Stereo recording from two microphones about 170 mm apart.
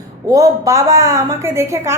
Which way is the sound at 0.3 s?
20° right (ahead or behind).